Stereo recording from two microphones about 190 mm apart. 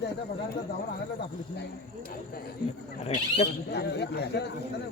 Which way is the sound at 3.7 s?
60° left (ahead or behind).